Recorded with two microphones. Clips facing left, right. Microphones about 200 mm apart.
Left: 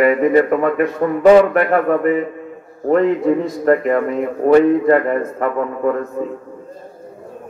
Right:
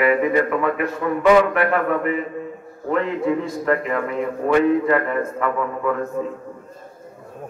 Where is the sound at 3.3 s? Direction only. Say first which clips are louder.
Left 6 dB; 40° left (ahead or behind).